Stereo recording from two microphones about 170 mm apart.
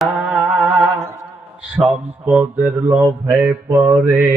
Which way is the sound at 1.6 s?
5° right (ahead or behind).